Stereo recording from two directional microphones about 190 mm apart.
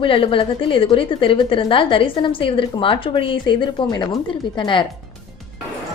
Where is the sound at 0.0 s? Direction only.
30° left (ahead or behind).